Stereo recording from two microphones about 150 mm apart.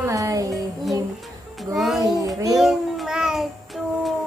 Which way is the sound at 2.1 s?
25° right (ahead or behind).